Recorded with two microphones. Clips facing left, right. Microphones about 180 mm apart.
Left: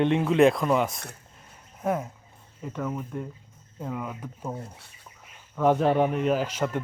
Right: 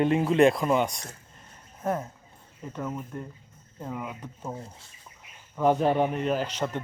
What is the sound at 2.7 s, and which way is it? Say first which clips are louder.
A man's voice: left 2 dB; centre (ahead or behind).